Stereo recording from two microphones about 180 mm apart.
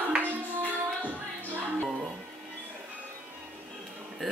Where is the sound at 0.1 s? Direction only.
10° right (ahead or behind).